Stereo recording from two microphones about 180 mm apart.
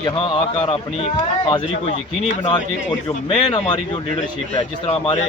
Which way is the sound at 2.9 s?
25° left (ahead or behind).